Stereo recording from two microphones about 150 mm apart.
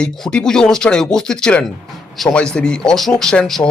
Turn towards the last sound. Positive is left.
turn(degrees=5)  # may be behind; listen again after turning